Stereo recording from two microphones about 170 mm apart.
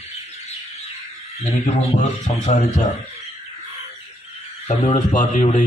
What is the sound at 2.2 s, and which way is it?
Speech, 50° left (ahead or behind).